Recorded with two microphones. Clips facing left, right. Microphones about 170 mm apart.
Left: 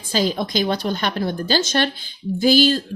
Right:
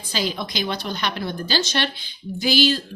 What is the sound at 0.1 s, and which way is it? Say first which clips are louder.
A woman's voice: left 6 dB; 45° left (ahead or behind).